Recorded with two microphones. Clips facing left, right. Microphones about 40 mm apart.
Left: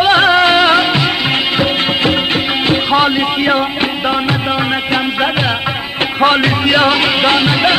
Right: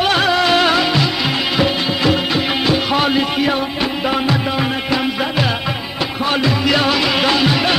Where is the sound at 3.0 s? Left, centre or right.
Left.